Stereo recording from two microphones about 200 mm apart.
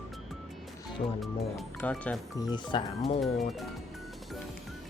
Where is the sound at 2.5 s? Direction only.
25° left (ahead or behind).